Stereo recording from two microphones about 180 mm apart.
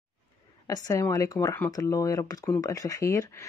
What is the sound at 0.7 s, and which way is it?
Speech, 20° left (ahead or behind).